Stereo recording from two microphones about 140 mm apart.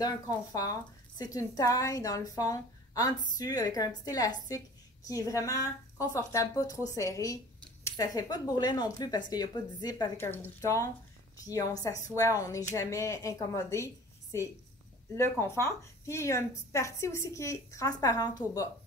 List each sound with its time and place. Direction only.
0.0 s a woman's voice: 25° left (ahead or behind)
10.2 s a woman's voice: 15° left (ahead or behind)
15.1 s a woman's voice: 20° left (ahead or behind)